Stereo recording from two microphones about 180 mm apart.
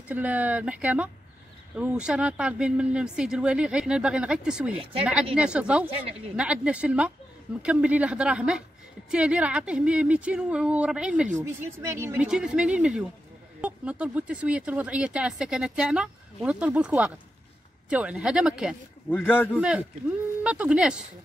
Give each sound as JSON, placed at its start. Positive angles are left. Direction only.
{"t": 0.1, "sound": "speech", "side_deg": -10}
{"t": 11.3, "sound": "speech", "side_deg": -15}
{"t": 12.3, "sound": "speech", "side_deg": -5}
{"t": 19.0, "sound": "a man's voice", "side_deg": 10}
{"t": 19.5, "sound": "speech", "side_deg": -5}